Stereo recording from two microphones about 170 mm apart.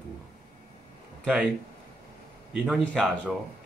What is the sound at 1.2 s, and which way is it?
Speech, 5° right (ahead or behind).